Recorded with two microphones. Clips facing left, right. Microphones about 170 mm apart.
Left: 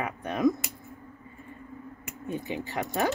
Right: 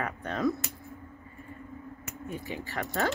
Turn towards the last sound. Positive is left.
turn(degrees=15)  # may be behind; listen again after turning